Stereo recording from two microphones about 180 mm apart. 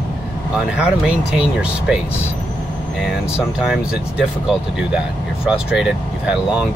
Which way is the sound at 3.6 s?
5° right (ahead or behind).